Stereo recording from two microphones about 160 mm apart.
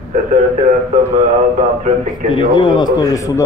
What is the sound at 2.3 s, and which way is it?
A man's voice, 30° left (ahead or behind).